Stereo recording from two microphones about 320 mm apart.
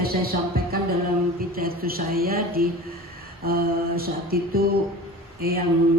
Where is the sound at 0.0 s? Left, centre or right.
Right.